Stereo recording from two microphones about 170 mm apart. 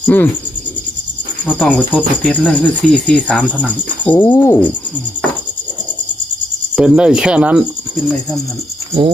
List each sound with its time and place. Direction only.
0.0 s cricket: 10° left (ahead or behind)
1.5 s cricket: 10° left (ahead or behind)
6.7 s speech: 5° right (ahead or behind)